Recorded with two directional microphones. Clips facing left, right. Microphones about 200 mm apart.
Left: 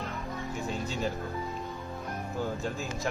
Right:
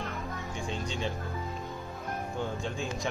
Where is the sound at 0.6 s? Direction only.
5° left (ahead or behind).